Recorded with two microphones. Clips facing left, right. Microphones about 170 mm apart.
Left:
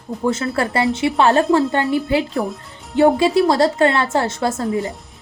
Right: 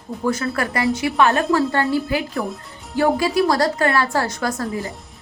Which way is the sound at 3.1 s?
25° left (ahead or behind).